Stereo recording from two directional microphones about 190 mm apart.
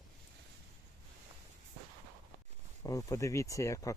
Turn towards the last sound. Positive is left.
turn(degrees=15)  # may be behind; listen again after turning